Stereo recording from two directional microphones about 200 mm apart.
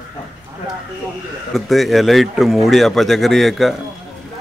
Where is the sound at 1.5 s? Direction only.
Centre (ahead or behind).